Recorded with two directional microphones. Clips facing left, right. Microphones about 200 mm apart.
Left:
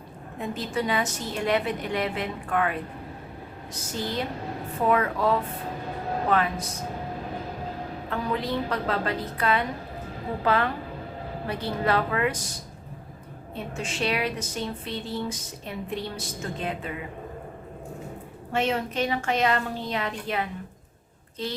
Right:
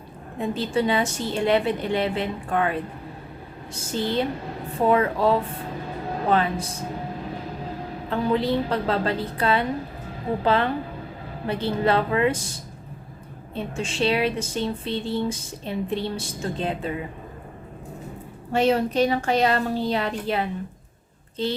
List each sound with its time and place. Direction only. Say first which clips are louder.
0.3 s speech: right 5 dB; 30° right (ahead or behind)
3.9 s speech: right 6 dB; 25° right (ahead or behind)
8.1 s speech: right 6 dB; 30° right (ahead or behind)
13.6 s speech: right 5 dB; 30° right (ahead or behind)
18.5 s a woman's voice: right 6 dB; 35° right (ahead or behind)